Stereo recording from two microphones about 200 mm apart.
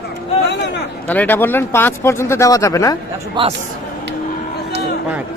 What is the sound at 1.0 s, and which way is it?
Speech, 10° left (ahead or behind).